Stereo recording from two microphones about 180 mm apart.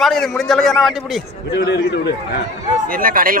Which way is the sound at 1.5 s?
70° left (ahead or behind).